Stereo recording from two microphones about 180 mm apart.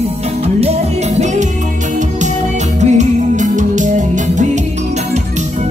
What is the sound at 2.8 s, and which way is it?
Music, 40° right (ahead or behind).